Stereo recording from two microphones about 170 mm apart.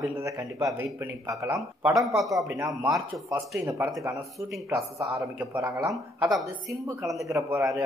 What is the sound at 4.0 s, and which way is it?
Speech, 15° right (ahead or behind).